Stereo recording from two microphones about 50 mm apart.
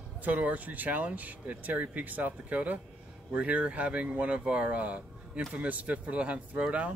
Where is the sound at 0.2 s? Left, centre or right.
Right.